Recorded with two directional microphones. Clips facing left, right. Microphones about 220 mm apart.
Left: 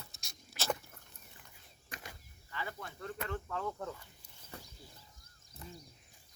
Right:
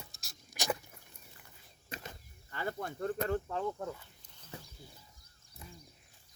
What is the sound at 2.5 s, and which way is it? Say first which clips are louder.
Speech: right 6 dB; 50° right (ahead or behind).